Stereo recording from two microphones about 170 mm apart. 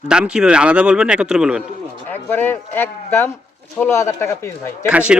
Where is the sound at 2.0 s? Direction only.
10° left (ahead or behind).